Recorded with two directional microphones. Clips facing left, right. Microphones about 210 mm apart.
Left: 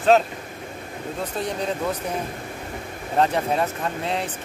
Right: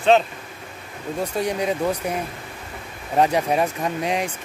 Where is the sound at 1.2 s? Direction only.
10° right (ahead or behind).